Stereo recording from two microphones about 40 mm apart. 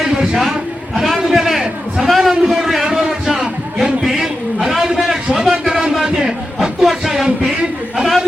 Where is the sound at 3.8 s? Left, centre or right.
Right.